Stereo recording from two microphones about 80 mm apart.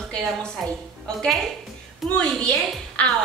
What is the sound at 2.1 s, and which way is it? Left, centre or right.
A woman's voice, centre.